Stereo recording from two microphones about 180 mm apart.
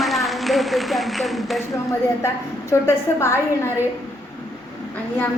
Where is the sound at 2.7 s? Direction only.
15° left (ahead or behind).